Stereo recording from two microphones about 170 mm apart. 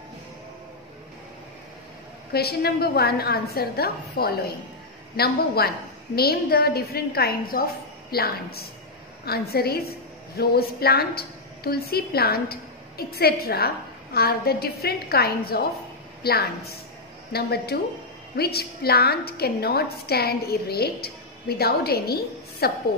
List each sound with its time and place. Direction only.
2.3 s a woman's voice: 65° left (ahead or behind)